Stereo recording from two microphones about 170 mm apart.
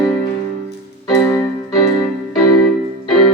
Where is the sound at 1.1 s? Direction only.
20° left (ahead or behind).